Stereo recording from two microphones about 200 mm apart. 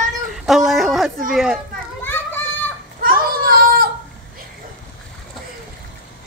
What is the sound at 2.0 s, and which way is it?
Children playing, 10° left (ahead or behind).